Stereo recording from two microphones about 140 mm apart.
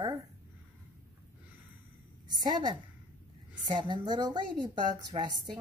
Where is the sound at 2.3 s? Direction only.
30° right (ahead or behind).